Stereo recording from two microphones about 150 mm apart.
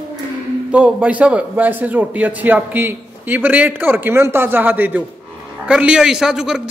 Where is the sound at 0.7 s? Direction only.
10° right (ahead or behind).